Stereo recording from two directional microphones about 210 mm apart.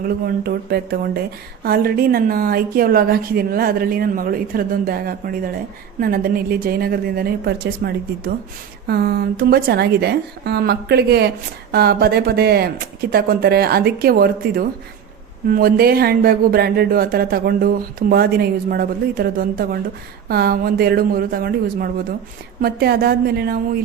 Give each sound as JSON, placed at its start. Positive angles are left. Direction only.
{"t": 0.0, "sound": "a woman's voice", "side_deg": -45}